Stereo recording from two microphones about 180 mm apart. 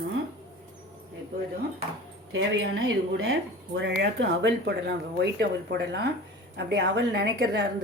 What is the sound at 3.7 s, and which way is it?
Speech, 75° right (ahead or behind).